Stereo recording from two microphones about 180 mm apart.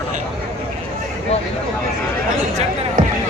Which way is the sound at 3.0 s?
50° right (ahead or behind).